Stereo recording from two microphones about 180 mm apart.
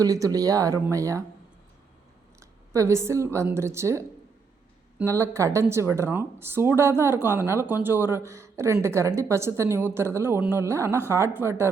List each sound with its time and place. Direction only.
0.0 s speech: 20° right (ahead or behind)
2.4 s speech: 15° right (ahead or behind)
5.0 s a woman's voice: 15° right (ahead or behind)